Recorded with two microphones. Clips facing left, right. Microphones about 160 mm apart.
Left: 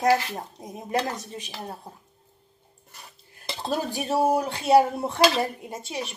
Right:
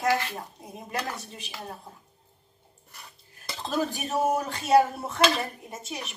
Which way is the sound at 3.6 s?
35° left (ahead or behind).